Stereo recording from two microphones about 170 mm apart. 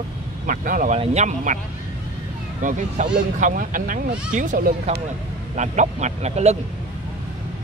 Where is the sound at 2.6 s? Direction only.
50° right (ahead or behind).